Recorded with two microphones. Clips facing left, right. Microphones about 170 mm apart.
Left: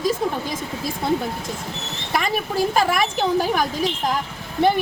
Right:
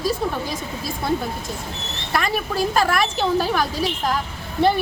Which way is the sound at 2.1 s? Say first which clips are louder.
Even; 15° left (ahead or behind).